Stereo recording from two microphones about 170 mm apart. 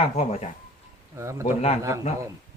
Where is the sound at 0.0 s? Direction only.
35° left (ahead or behind).